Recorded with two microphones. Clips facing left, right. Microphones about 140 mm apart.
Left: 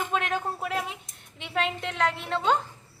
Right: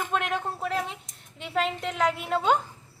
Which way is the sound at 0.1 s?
Centre (ahead or behind).